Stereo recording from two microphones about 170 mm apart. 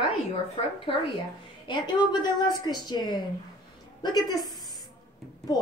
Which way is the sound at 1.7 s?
25° left (ahead or behind).